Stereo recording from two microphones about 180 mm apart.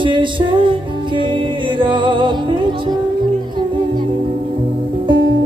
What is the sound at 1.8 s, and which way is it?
Music, 25° right (ahead or behind).